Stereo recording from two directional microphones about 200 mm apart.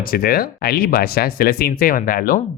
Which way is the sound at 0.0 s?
50° left (ahead or behind).